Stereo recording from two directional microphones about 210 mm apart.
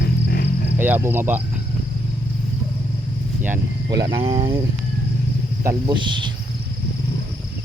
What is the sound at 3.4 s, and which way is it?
Cricket, 10° right (ahead or behind).